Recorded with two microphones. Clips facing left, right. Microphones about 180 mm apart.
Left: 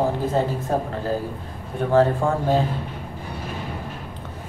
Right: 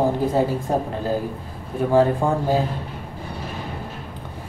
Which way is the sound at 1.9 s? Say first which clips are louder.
Even; 10° right (ahead or behind).